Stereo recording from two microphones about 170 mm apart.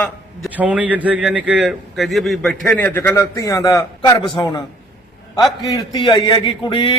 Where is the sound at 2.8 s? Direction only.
10° left (ahead or behind).